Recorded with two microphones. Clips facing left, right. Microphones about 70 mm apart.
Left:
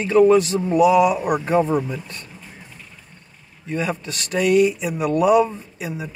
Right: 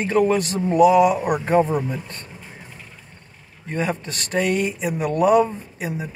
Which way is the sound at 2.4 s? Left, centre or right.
Centre.